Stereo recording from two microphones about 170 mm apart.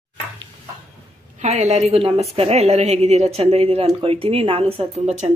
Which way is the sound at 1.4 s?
40° right (ahead or behind).